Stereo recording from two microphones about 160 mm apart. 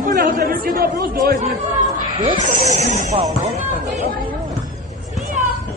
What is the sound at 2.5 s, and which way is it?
Speech, 50° right (ahead or behind).